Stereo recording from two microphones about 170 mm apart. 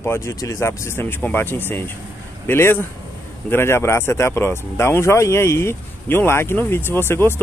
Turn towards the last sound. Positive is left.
turn(degrees=15)  # may be behind; listen again after turning